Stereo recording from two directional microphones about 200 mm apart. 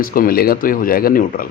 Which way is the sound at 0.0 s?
45° left (ahead or behind).